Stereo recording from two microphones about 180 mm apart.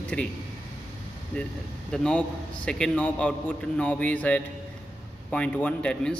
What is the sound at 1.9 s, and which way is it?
A man's voice, 5° left (ahead or behind).